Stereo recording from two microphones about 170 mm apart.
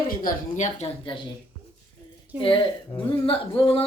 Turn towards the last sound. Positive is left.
turn(degrees=30)  # may be behind; listen again after turning